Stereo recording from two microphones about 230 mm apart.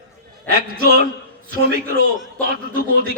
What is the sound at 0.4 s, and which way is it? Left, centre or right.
Speech, right.